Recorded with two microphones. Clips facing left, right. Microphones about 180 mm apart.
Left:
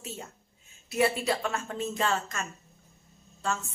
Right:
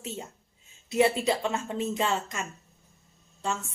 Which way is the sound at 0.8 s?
25° right (ahead or behind).